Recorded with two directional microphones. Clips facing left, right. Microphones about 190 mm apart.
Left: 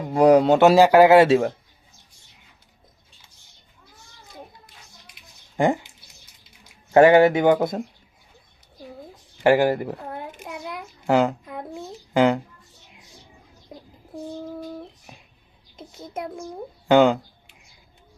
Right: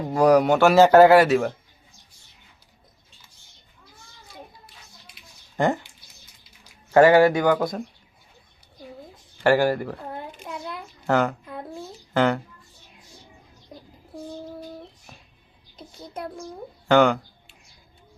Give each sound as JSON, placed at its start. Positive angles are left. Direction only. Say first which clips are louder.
{"t": 0.1, "sound": "speech", "louder": "left 2 dB", "side_deg": 20}
{"t": 0.8, "sound": "speech", "louder": "right 2 dB", "side_deg": 10}
{"t": 5.1, "sound": "a sound", "louder": "left 2 dB", "side_deg": 15}
{"t": 6.9, "sound": "speech", "louder": "left 1 dB", "side_deg": 20}
{"t": 9.4, "sound": "a woman's voice", "louder": "left 2 dB", "side_deg": 20}
{"t": 10.4, "sound": "a sound", "louder": "left 1 dB", "side_deg": 15}
{"t": 15.7, "sound": "a child's voice", "louder": "left 3 dB", "side_deg": 25}